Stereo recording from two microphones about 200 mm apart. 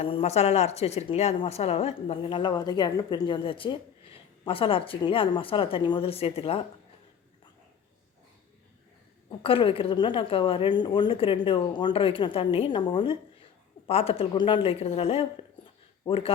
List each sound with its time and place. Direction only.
0.0 s a woman's voice: 30° left (ahead or behind)
9.4 s a woman's voice: 25° left (ahead or behind)